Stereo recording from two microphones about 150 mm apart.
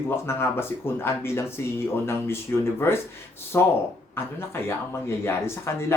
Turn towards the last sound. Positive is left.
turn(degrees=15)  # may be behind; listen again after turning